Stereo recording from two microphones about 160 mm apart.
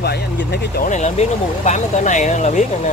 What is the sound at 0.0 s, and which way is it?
Speech, 90° left.